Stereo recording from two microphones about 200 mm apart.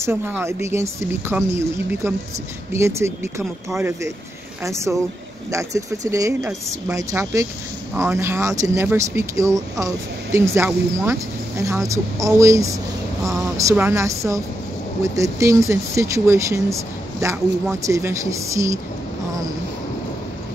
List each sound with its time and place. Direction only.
0.0 s speech: 10° right (ahead or behind)